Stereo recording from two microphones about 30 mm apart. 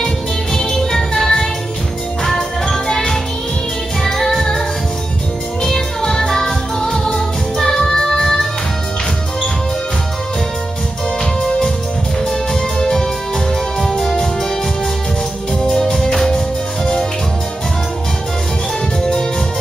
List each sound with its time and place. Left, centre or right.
0.6 s music: centre
4.0 s music: centre
5.6 s music: centre
13.7 s music: centre
15.6 s music: centre